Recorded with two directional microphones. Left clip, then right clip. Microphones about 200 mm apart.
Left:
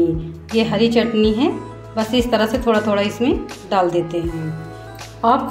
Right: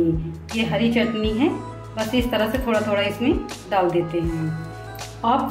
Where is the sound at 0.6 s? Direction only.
40° left (ahead or behind).